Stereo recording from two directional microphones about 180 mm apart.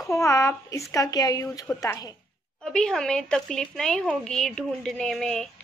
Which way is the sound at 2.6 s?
5° left (ahead or behind).